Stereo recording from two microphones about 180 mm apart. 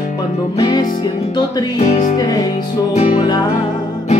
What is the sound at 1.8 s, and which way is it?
Music, 40° left (ahead or behind).